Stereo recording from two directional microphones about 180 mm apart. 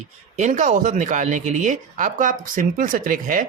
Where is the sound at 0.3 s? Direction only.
40° right (ahead or behind).